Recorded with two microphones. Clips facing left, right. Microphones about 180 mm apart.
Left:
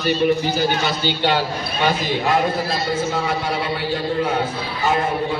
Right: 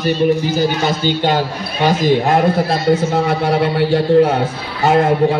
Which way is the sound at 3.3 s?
60° right (ahead or behind).